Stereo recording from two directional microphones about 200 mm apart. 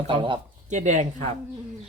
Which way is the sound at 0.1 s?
25° right (ahead or behind).